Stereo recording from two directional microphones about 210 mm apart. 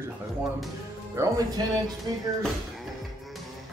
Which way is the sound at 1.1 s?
15° right (ahead or behind).